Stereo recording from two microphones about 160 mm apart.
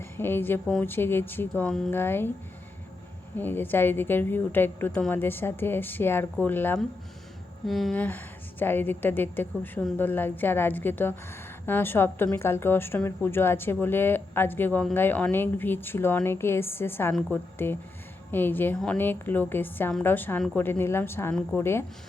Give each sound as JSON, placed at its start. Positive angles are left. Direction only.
{"t": 0.0, "sound": "a woman's voice", "side_deg": 15}
{"t": 3.3, "sound": "a woman's voice", "side_deg": 10}
{"t": 7.7, "sound": "a woman's voice", "side_deg": 0}